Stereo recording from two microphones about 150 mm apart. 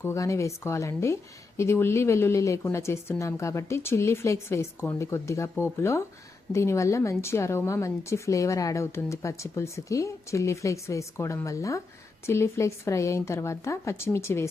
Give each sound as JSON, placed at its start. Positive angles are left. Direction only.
{"t": 0.0, "sound": "a woman's voice", "side_deg": 20}